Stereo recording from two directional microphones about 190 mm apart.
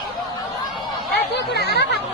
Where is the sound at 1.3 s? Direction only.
60° left (ahead or behind).